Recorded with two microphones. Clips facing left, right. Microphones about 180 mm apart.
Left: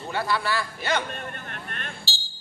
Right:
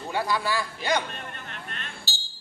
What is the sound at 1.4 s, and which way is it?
Vehicle, 55° left (ahead or behind).